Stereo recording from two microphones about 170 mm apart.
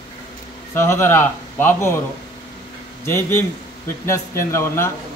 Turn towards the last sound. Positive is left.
turn(degrees=15)  # may be behind; listen again after turning